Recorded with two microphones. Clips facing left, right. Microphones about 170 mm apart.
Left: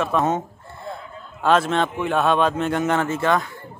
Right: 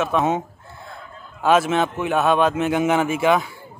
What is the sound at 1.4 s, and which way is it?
A man's voice, 5° right (ahead or behind).